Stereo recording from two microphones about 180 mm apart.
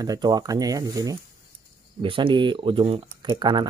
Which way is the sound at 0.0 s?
20° right (ahead or behind).